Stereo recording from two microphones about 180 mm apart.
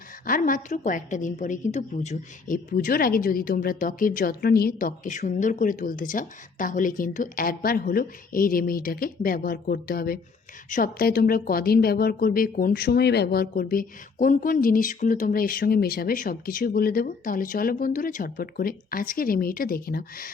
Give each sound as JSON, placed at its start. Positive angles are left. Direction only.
{"t": 0.3, "sound": "a woman's voice", "side_deg": 50}